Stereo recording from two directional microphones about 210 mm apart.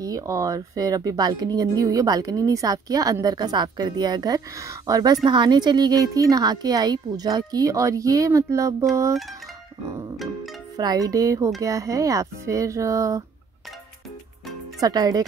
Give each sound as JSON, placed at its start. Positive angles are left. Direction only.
{"t": 0.0, "sound": "speech", "side_deg": -15}
{"t": 10.1, "sound": "music", "side_deg": 0}
{"t": 10.8, "sound": "speech", "side_deg": -15}
{"t": 14.8, "sound": "speech", "side_deg": -15}